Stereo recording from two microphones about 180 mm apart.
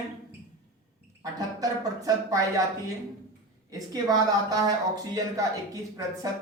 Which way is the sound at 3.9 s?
20° right (ahead or behind).